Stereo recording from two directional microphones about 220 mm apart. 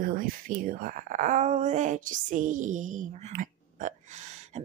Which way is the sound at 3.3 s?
35° right (ahead or behind).